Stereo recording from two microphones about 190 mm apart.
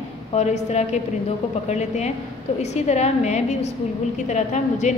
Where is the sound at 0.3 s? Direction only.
35° left (ahead or behind).